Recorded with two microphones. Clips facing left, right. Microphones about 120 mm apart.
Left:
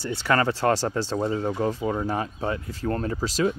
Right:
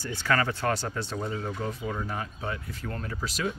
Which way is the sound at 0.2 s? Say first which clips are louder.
Left 4 dB; 30° left (ahead or behind).